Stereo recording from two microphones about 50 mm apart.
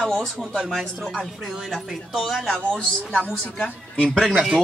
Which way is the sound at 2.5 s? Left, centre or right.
Centre.